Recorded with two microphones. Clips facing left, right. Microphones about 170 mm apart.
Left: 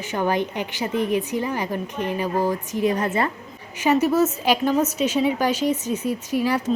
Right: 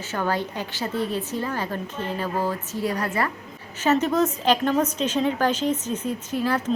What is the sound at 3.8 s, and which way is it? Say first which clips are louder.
A woman's voice: left 2 dB; 10° left (ahead or behind).